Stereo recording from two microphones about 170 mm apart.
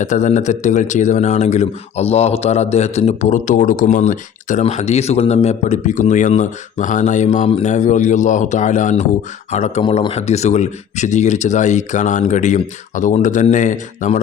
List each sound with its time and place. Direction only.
0.0 s speech: 45° left (ahead or behind)